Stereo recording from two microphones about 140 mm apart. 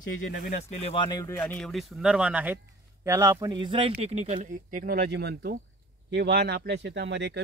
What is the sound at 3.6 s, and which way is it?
Speech, 40° right (ahead or behind).